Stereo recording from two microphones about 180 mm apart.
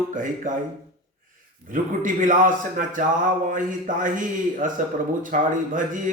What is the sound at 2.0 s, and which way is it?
Speech, 45° right (ahead or behind).